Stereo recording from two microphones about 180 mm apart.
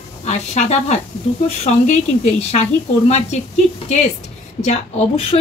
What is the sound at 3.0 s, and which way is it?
Speech, 40° left (ahead or behind).